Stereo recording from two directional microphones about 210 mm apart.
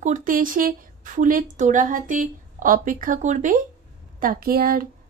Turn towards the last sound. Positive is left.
turn(degrees=-45)  # may be behind; listen again after turning